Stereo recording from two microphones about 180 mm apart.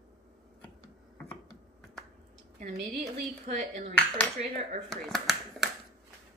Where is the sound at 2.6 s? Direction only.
35° right (ahead or behind).